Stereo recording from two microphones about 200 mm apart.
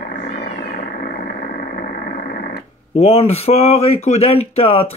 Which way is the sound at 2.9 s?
30° left (ahead or behind).